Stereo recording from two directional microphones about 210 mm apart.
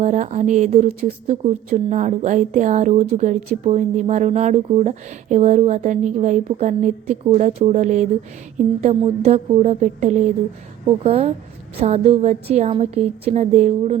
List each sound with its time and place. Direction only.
0.0 s a woman's voice: 35° right (ahead or behind)